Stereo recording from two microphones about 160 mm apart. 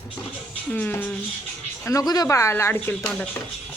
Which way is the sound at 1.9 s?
20° left (ahead or behind).